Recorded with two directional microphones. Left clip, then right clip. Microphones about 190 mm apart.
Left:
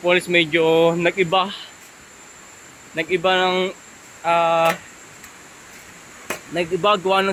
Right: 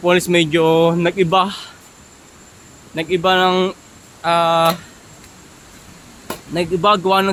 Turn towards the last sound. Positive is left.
turn(degrees=-10)  # may be behind; listen again after turning